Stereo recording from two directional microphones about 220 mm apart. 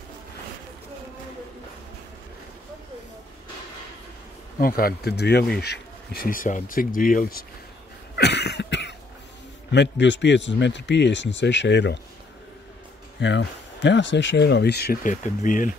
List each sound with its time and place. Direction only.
4.6 s speech: 40° left (ahead or behind)
8.2 s cough: 50° left (ahead or behind)
9.7 s speech: 50° left (ahead or behind)
13.2 s speech: 55° left (ahead or behind); by 15.7 s 35° left (ahead or behind)